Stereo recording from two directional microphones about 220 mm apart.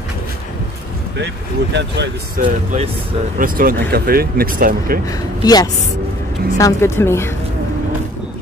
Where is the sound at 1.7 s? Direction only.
50° right (ahead or behind).